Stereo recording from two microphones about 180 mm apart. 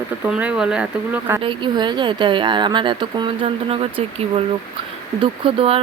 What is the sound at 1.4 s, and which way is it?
Speech, 25° right (ahead or behind).